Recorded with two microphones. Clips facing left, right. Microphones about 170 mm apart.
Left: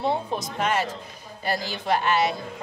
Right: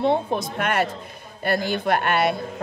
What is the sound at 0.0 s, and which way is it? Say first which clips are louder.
A woman's voice: right 5 dB; 55° right (ahead or behind).